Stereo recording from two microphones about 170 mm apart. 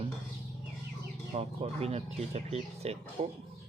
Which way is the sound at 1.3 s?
40° right (ahead or behind).